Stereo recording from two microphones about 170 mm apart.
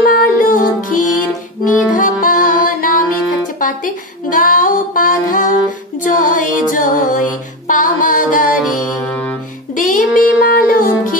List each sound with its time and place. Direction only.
0.0 s music: 55° left (ahead or behind)
6.0 s female singing: 50° left (ahead or behind)
9.8 s music: 50° left (ahead or behind)